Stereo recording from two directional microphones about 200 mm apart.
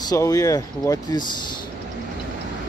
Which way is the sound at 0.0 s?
20° left (ahead or behind).